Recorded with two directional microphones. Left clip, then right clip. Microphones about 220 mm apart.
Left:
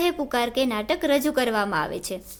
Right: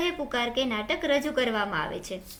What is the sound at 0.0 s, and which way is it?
A woman's voice, 50° left (ahead or behind).